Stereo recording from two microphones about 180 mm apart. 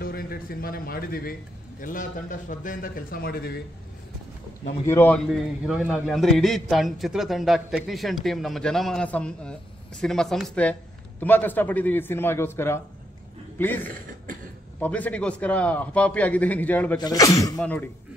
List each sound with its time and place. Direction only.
0.0 s a man's voice: 55° left (ahead or behind)
4.8 s a man's voice: 10° left (ahead or behind)
17.0 s a man's voice: 20° left (ahead or behind)